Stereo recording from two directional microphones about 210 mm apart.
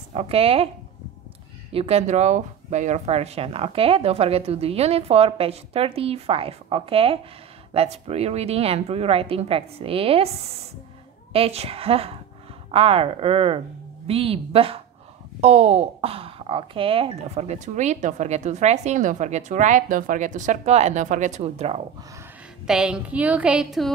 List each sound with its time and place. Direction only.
0.1 s speech: 30° right (ahead or behind)
1.7 s speech: 30° right (ahead or behind)
11.3 s speech: 30° right (ahead or behind)
22.7 s a woman's voice: 5° right (ahead or behind)